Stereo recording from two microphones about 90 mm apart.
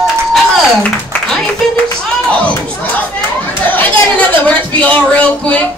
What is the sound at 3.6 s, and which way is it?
Speech, 20° left (ahead or behind).